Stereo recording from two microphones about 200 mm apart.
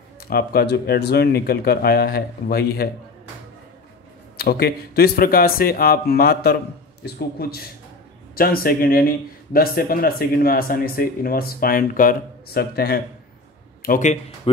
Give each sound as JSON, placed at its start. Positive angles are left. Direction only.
{"t": 0.3, "sound": "speech", "side_deg": 50}
{"t": 4.4, "sound": "speech", "side_deg": 50}